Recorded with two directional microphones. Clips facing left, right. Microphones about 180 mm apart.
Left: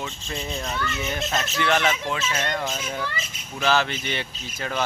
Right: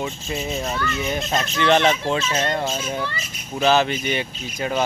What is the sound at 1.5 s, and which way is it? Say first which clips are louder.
A child's voice: right 6 dB; 25° right (ahead or behind).